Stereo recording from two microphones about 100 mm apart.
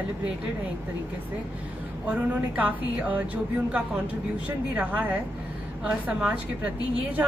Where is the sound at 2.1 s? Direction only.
15° right (ahead or behind).